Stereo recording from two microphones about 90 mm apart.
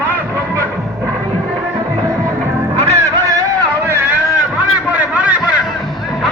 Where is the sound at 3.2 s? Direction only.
40° right (ahead or behind).